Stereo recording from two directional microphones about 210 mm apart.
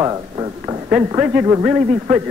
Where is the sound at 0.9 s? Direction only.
5° right (ahead or behind).